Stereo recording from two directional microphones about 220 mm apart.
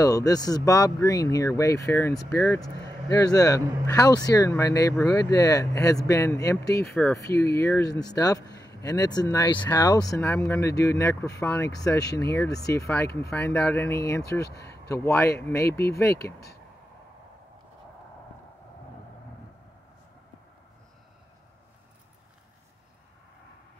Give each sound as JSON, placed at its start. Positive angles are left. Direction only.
{"t": 0.0, "sound": "speech", "side_deg": 15}
{"t": 7.2, "sound": "speech", "side_deg": 50}
{"t": 7.5, "sound": "speech", "side_deg": 10}